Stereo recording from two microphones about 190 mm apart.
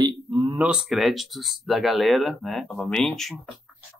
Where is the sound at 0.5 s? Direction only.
5° right (ahead or behind).